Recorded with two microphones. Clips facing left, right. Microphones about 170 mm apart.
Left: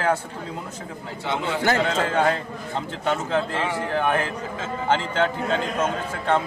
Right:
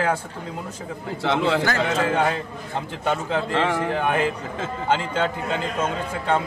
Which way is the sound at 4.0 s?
15° right (ahead or behind).